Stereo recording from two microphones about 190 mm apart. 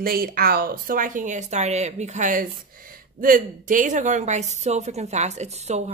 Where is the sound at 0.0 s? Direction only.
50° right (ahead or behind).